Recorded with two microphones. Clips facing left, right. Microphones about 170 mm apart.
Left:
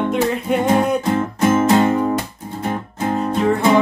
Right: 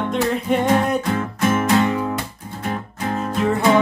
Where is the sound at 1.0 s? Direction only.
25° left (ahead or behind).